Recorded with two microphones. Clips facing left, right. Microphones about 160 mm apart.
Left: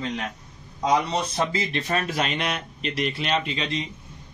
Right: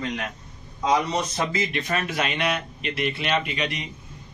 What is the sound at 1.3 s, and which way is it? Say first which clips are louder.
A man's voice: even; 30° left (ahead or behind).